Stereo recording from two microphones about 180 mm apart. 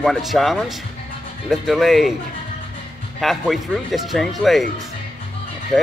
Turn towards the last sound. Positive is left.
turn(degrees=0)  # may be behind; listen again after turning